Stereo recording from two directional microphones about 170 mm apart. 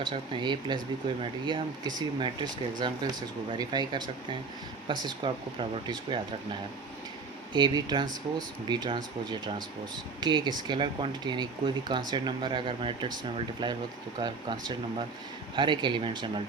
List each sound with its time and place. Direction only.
0.0 s speech: 25° right (ahead or behind)